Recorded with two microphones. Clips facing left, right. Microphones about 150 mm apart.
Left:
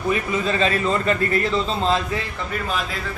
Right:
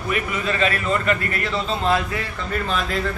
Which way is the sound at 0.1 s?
30° left (ahead or behind).